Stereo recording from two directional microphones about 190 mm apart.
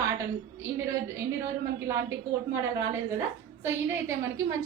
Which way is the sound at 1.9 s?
15° right (ahead or behind).